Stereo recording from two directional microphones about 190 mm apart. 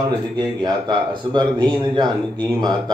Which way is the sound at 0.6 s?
25° right (ahead or behind).